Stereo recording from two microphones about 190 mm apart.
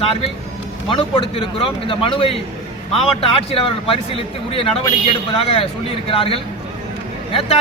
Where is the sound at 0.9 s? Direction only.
25° left (ahead or behind).